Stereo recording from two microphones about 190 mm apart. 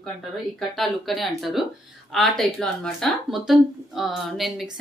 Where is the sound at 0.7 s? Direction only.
Centre (ahead or behind).